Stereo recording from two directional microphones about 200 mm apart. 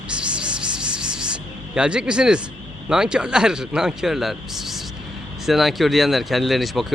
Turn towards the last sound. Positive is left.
turn(degrees=0)  # may be behind; listen again after turning